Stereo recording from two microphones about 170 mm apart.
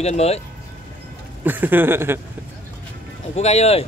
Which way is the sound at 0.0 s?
40° left (ahead or behind).